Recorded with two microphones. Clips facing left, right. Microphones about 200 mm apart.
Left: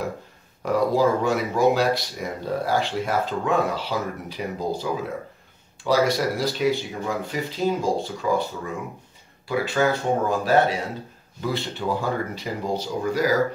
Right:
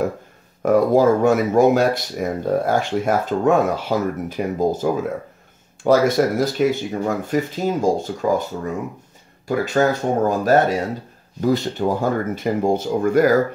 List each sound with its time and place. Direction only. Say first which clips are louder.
0.6 s speech: right 6 dB; 50° right (ahead or behind)